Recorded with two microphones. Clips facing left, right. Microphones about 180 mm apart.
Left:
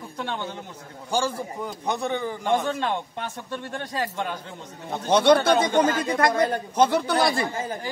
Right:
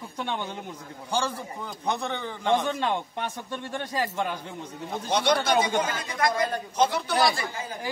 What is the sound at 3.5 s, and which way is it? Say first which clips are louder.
Speech: left 1 dB; 10° right (ahead or behind).